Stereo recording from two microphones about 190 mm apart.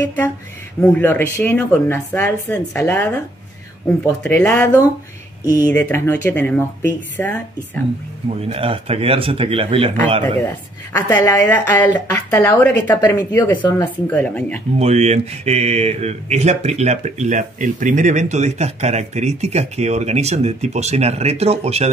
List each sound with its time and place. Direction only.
0.0 s speech: 10° left (ahead or behind)
8.4 s a man's voice: 30° right (ahead or behind)
10.2 s speech: 10° left (ahead or behind)
14.8 s speech: 35° right (ahead or behind)